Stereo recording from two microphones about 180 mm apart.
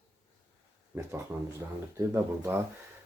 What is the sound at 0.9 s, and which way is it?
Speech, 10° right (ahead or behind).